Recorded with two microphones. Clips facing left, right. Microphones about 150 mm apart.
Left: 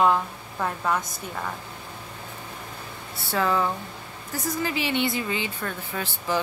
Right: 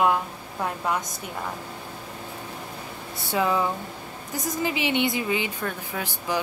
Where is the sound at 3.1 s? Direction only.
15° right (ahead or behind).